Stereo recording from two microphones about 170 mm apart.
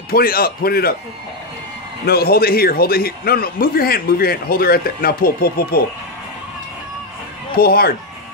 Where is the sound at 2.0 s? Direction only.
65° left (ahead or behind).